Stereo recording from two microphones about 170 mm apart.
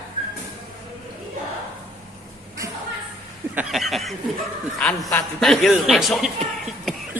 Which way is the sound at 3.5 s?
5° right (ahead or behind).